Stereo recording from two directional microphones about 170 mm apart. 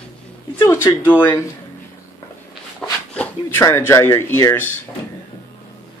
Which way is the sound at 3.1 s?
15° left (ahead or behind).